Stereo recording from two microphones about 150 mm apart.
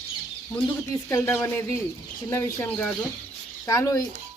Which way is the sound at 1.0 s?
20° left (ahead or behind).